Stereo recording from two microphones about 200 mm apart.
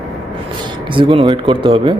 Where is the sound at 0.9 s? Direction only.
25° right (ahead or behind).